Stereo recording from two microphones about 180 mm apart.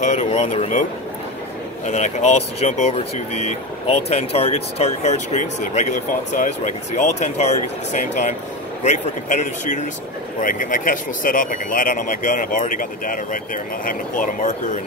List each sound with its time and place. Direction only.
0.0 s speech: 40° left (ahead or behind)
1.9 s speech: 40° left (ahead or behind)